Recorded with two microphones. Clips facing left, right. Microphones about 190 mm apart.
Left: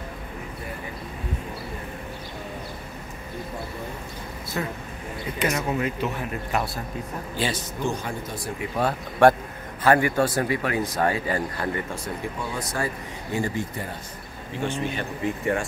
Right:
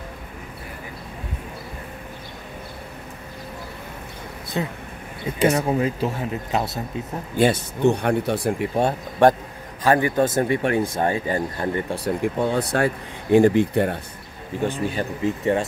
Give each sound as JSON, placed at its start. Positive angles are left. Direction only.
{"t": 4.6, "sound": "speech", "side_deg": -20}
{"t": 7.3, "sound": "speech", "side_deg": -55}
{"t": 8.7, "sound": "speech", "side_deg": -25}
{"t": 12.0, "sound": "speech", "side_deg": -60}
{"t": 14.6, "sound": "speech", "side_deg": -35}